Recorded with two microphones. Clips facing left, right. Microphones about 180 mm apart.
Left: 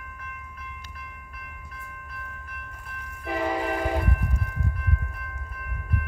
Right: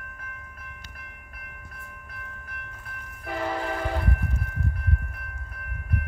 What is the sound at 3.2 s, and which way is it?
Train horn, 10° left (ahead or behind).